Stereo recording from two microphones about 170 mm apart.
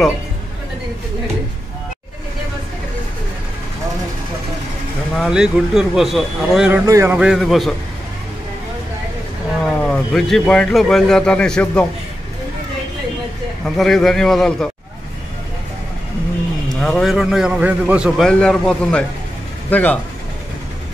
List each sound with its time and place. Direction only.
5.1 s a man's voice: 5° right (ahead or behind)
6.9 s speech: 15° right (ahead or behind)
7.2 s a man's voice: centre (ahead or behind)
9.8 s a man's voice: centre (ahead or behind)
13.7 s a man's voice: centre (ahead or behind)
16.8 s a man's voice: 5° left (ahead or behind)